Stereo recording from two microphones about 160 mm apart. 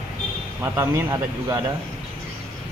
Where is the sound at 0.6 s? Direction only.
15° right (ahead or behind).